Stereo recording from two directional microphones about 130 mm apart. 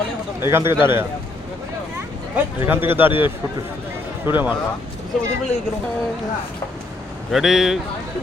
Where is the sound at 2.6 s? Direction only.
15° right (ahead or behind).